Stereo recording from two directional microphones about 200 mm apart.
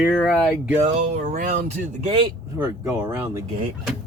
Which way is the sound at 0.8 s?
35° right (ahead or behind).